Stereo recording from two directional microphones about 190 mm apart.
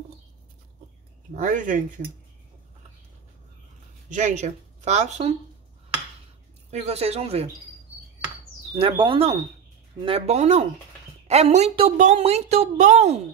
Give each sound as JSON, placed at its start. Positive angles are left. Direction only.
{"t": 1.3, "sound": "speech", "side_deg": -40}
{"t": 4.1, "sound": "speech", "side_deg": -40}
{"t": 6.7, "sound": "speech", "side_deg": -35}
{"t": 8.7, "sound": "speech", "side_deg": -25}